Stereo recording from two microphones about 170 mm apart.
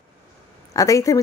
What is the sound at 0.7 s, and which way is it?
Speech, 20° left (ahead or behind).